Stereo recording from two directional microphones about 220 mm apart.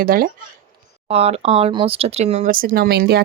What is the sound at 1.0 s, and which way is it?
Speech, 25° right (ahead or behind).